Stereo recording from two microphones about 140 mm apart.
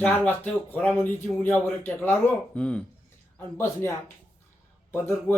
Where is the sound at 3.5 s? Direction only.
20° left (ahead or behind).